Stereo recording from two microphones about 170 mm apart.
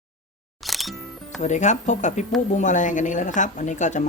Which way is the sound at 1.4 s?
45° left (ahead or behind).